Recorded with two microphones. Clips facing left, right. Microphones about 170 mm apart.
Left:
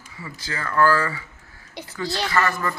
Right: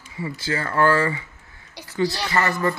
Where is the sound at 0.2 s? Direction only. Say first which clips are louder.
Right 6 dB; 30° right (ahead or behind).